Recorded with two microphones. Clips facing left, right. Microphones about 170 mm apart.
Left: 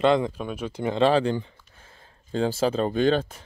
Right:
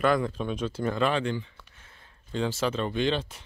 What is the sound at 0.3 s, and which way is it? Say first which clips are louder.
Speech: right 1 dB; 10° left (ahead or behind).